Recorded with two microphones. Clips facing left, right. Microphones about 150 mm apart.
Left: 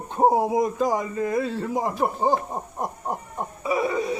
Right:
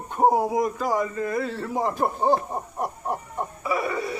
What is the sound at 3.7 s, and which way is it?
Music, 20° left (ahead or behind).